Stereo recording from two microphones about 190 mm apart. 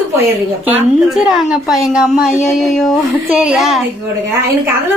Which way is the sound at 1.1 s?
Centre (ahead or behind).